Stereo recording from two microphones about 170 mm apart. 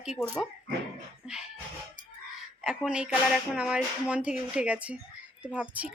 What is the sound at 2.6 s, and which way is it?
A woman's voice, 5° right (ahead or behind).